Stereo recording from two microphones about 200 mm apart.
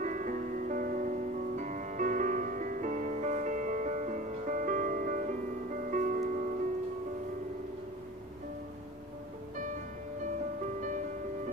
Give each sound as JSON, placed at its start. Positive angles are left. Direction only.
{"t": 0.0, "sound": "music", "side_deg": -40}
{"t": 10.8, "sound": "music", "side_deg": -40}